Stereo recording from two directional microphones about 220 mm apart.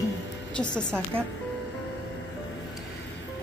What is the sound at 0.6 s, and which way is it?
Speech, 5° left (ahead or behind).